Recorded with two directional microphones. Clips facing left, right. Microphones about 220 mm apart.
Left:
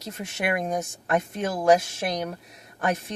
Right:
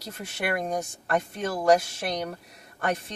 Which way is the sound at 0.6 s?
5° left (ahead or behind).